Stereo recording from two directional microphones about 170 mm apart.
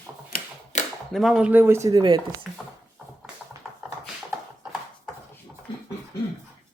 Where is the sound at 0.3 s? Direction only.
50° left (ahead or behind).